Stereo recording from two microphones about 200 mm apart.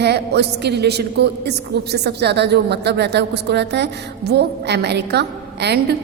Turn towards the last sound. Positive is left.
turn(degrees=-55)  # may be behind; listen again after turning